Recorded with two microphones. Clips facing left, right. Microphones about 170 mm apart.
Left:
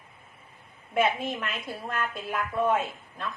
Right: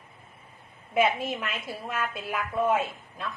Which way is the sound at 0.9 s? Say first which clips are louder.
Right 1 dB; centre (ahead or behind).